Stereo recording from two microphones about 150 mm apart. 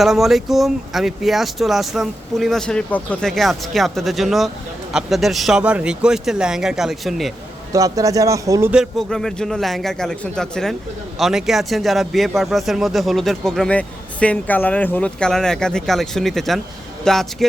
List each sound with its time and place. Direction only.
0.0 s speech: centre (ahead or behind)
7.7 s speech: 20° right (ahead or behind)
8.7 s speech: centre (ahead or behind)